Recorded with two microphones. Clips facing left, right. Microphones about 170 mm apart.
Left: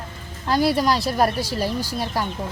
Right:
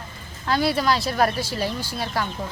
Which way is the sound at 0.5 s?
40° left (ahead or behind).